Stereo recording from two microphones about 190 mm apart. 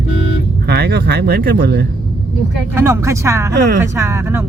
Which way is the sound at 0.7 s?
60° right (ahead or behind).